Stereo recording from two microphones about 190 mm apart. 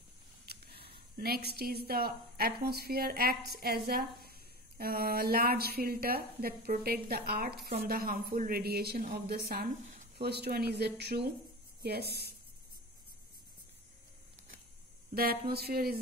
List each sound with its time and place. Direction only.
0.5 s a sound: 55° right (ahead or behind)
1.1 s a woman's voice: 55° right (ahead or behind)
15.1 s a woman's voice: 55° right (ahead or behind)